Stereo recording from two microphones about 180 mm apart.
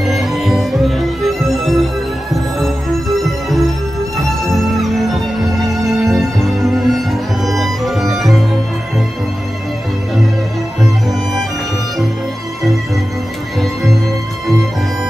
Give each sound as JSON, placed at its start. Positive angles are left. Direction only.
{"t": 0.0, "sound": "music", "side_deg": 0}